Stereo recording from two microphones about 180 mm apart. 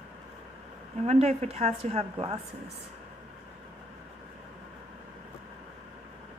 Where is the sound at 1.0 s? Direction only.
35° right (ahead or behind).